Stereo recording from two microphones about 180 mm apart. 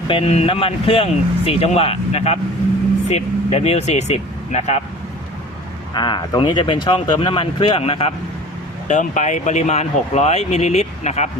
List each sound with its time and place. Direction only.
0.1 s speech: 35° left (ahead or behind)
5.9 s speech: 25° left (ahead or behind)
8.9 s speech: 40° left (ahead or behind)